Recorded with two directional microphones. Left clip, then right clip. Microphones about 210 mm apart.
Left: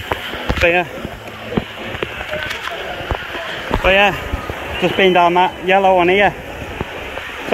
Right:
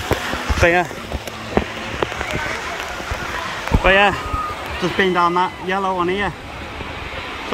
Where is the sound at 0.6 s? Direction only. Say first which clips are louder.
Left 1 dB; 50° right (ahead or behind).